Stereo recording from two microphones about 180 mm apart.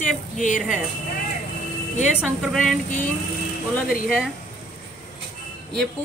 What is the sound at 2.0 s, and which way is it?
Speech, 5° right (ahead or behind).